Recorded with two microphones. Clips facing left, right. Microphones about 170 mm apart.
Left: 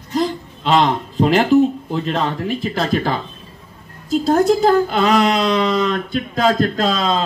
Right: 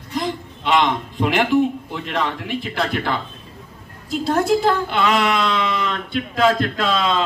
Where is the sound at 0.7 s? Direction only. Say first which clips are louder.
Left 3 dB; 35° left (ahead or behind).